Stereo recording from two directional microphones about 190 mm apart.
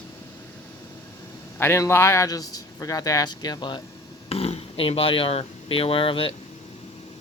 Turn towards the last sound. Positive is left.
turn(degrees=30)  # may be behind; listen again after turning